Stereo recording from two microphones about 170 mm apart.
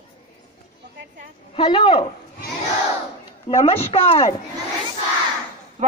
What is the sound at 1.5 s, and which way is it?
Speech, 30° left (ahead or behind).